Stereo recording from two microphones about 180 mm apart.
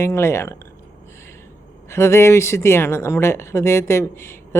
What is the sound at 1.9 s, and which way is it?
Speech, 15° left (ahead or behind).